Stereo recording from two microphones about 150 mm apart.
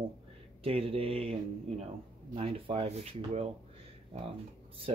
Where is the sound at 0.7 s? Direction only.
40° right (ahead or behind).